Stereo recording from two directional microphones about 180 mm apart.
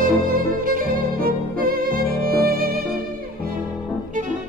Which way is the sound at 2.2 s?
55° right (ahead or behind).